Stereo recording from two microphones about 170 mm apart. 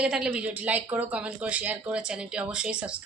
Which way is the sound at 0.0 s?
5° right (ahead or behind).